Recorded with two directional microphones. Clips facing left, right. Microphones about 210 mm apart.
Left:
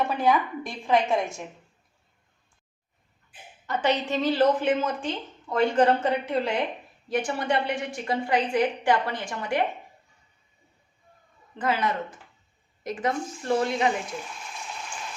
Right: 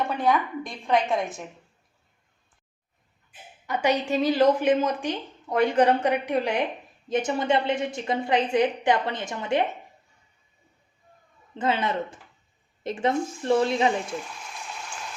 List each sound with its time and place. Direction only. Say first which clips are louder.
0.0 s a woman's voice: left 1 dB; centre (ahead or behind)
3.7 s a woman's voice: right 1 dB; 10° right (ahead or behind)
11.5 s a woman's voice: right 1 dB; 25° right (ahead or behind)